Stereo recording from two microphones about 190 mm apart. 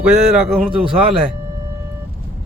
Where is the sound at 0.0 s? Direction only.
5° right (ahead or behind).